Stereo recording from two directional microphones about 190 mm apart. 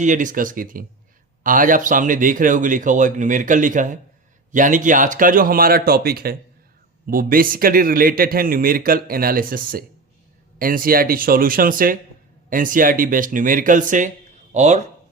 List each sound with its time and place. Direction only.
0.0 s speech: 40° right (ahead or behind)